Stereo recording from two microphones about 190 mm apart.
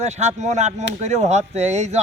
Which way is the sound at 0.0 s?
35° right (ahead or behind).